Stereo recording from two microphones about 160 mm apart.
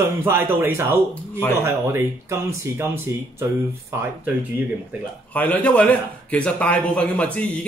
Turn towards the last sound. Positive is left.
turn(degrees=10)  # may be behind; listen again after turning